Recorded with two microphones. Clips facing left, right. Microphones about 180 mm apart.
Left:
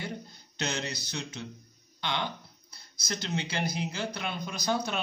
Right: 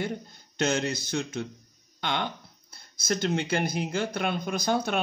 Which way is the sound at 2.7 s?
50° right (ahead or behind).